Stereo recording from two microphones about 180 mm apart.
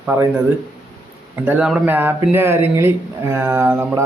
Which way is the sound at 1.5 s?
5° right (ahead or behind).